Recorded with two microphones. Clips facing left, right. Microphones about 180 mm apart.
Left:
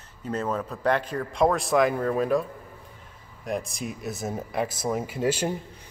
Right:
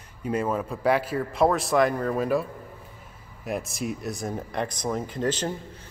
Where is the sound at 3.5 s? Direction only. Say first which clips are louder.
Right 1 dB; centre (ahead or behind).